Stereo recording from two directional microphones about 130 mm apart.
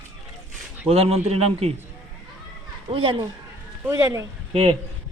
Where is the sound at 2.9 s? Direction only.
40° right (ahead or behind).